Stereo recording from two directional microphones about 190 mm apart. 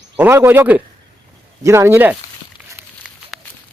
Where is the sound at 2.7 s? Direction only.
10° right (ahead or behind).